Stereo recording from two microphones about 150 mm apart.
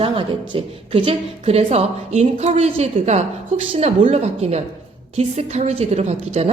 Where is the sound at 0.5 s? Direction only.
35° right (ahead or behind).